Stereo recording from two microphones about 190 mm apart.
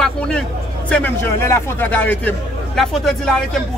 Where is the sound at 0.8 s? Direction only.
10° left (ahead or behind).